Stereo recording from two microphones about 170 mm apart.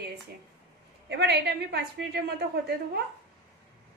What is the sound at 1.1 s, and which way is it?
A woman's voice, 75° right (ahead or behind).